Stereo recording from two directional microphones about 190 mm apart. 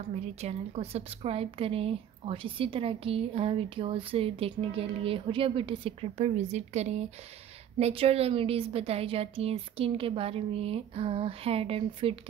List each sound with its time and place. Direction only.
0.4 s a woman's voice: 35° right (ahead or behind)